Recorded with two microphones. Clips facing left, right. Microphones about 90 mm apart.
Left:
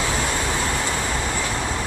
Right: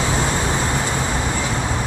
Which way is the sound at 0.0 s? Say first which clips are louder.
Right 3 dB; 20° right (ahead or behind).